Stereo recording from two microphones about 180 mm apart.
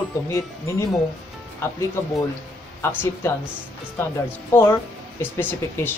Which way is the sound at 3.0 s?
15° left (ahead or behind).